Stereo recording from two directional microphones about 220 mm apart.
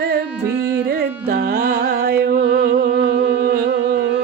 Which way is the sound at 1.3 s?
45° right (ahead or behind).